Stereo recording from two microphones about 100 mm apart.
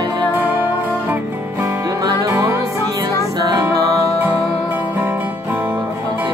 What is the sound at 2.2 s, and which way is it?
Music, 30° right (ahead or behind).